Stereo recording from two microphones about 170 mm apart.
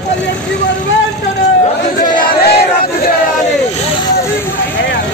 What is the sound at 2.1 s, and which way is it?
Crowd, 55° left (ahead or behind).